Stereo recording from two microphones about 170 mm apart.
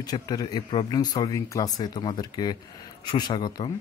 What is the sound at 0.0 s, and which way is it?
Speech, 20° left (ahead or behind).